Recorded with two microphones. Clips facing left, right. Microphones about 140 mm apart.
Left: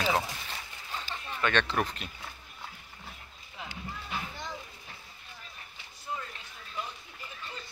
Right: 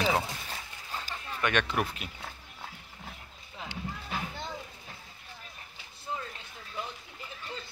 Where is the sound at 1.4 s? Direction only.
15° right (ahead or behind).